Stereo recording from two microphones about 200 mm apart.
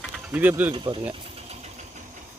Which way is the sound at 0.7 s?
25° right (ahead or behind).